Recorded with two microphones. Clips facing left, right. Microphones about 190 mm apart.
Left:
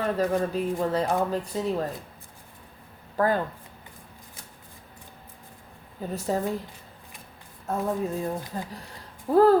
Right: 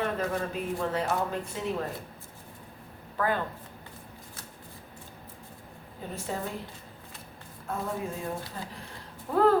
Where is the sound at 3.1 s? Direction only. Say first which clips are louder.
Left 5 dB; 40° left (ahead or behind).